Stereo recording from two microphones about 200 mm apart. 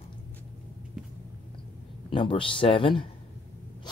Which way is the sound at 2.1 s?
25° left (ahead or behind).